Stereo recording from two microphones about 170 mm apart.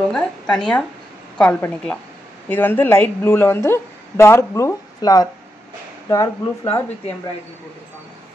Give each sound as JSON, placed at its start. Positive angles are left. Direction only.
{"t": 0.1, "sound": "a woman's voice", "side_deg": 5}